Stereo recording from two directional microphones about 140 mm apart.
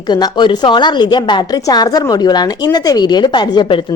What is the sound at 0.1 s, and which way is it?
A woman's voice, 30° left (ahead or behind).